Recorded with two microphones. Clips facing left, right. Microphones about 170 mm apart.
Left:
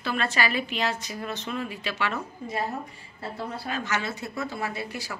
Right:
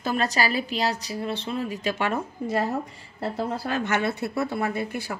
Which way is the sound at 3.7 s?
60° right (ahead or behind).